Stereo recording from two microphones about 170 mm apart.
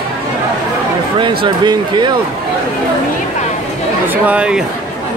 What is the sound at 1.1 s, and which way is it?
Speech, 25° right (ahead or behind).